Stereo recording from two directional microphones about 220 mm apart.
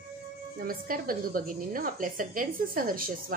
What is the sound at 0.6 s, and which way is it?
Speech, 40° right (ahead or behind).